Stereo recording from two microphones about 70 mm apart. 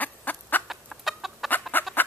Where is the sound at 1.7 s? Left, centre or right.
Left.